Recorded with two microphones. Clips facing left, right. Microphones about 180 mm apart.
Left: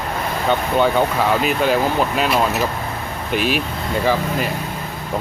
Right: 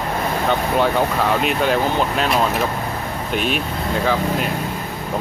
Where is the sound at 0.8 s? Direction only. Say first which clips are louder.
Left 2 dB; centre (ahead or behind).